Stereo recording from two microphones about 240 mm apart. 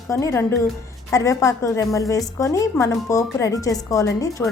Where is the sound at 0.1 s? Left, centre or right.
Centre.